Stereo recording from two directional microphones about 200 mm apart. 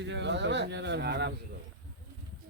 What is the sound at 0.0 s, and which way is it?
Speech, 60° right (ahead or behind).